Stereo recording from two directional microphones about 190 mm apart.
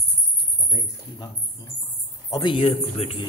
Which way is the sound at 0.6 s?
15° left (ahead or behind).